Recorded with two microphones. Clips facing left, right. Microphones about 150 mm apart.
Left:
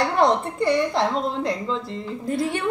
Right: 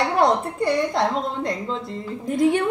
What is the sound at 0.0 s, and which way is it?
A woman's voice, centre (ahead or behind).